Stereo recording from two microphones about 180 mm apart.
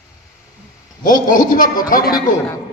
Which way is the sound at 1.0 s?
45° left (ahead or behind).